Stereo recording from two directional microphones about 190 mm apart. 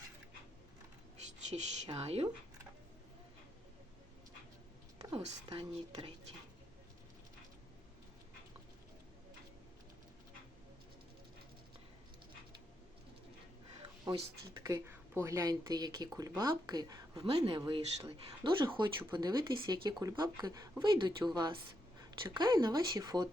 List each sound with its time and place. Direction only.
1.5 s speech: 35° right (ahead or behind)
5.5 s speech: 25° right (ahead or behind)
14.1 s speech: 25° right (ahead or behind)